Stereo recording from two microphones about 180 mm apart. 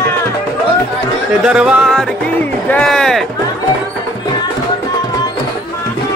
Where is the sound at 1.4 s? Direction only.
5° right (ahead or behind).